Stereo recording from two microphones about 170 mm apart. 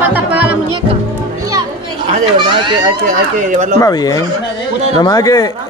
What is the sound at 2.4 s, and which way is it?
Speech, 30° right (ahead or behind).